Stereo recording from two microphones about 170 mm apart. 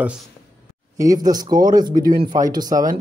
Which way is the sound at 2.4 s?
20° right (ahead or behind).